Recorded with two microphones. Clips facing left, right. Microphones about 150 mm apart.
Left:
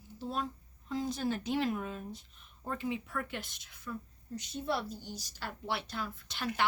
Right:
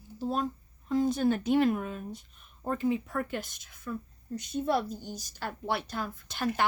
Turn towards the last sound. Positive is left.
turn(degrees=-45)  # may be behind; listen again after turning